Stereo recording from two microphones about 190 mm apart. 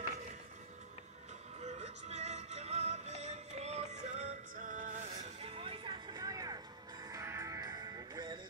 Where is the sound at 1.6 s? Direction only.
35° right (ahead or behind).